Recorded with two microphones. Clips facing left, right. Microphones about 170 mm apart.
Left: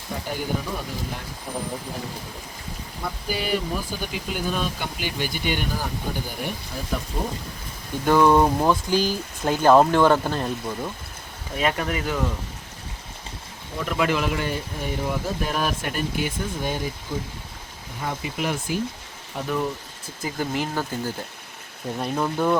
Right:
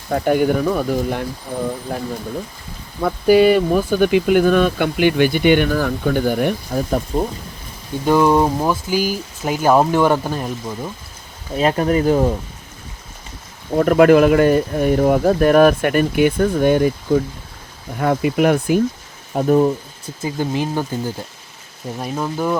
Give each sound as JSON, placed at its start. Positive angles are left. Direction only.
{"t": 0.1, "sound": "speech", "side_deg": -60}
{"t": 1.5, "sound": "speech", "side_deg": 0}
{"t": 1.9, "sound": "speech", "side_deg": -70}
{"t": 8.0, "sound": "speech", "side_deg": -15}
{"t": 11.5, "sound": "speech", "side_deg": -35}
{"t": 13.7, "sound": "speech", "side_deg": -55}
{"t": 19.3, "sound": "speech", "side_deg": -40}
{"t": 20.2, "sound": "speech", "side_deg": -20}
{"t": 21.9, "sound": "speech", "side_deg": -5}